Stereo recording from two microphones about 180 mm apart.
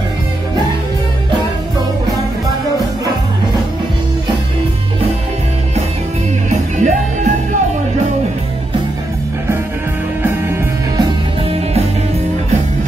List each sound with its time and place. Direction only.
6.5 s music: 40° right (ahead or behind)
10.2 s music: 15° right (ahead or behind)